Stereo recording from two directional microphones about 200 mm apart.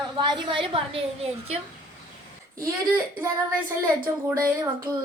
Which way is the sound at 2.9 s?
10° right (ahead or behind).